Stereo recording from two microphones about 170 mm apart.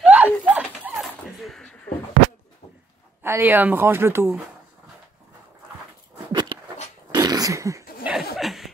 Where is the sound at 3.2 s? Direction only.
15° right (ahead or behind).